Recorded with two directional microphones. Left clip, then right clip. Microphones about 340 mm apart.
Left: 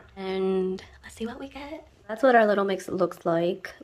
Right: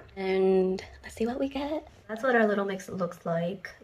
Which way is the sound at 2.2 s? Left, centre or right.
Centre.